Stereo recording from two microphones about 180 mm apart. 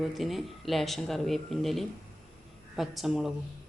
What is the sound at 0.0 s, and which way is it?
Speech, centre (ahead or behind).